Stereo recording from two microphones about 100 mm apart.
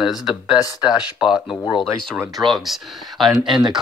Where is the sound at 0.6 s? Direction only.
40° left (ahead or behind).